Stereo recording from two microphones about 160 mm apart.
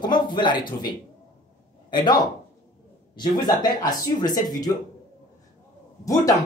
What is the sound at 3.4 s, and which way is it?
Speech, 25° left (ahead or behind).